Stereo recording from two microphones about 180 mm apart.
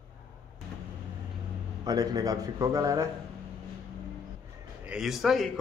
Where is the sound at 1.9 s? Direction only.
20° right (ahead or behind).